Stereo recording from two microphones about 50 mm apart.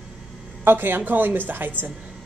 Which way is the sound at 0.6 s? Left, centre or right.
Right.